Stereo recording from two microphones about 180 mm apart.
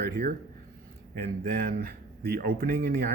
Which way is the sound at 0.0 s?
60° right (ahead or behind).